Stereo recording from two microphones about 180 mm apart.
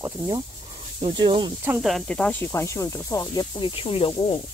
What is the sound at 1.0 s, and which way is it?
Speech, 25° right (ahead or behind).